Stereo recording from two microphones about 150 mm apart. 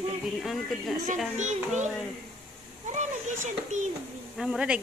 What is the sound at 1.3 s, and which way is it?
Speech, 55° right (ahead or behind).